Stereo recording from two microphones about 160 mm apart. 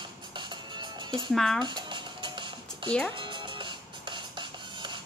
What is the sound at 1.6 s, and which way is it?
Dishes, 30° right (ahead or behind).